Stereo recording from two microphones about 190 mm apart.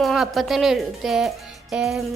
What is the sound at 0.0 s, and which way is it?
A woman's voice, centre (ahead or behind).